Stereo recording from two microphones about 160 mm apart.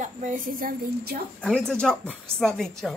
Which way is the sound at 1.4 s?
5° left (ahead or behind).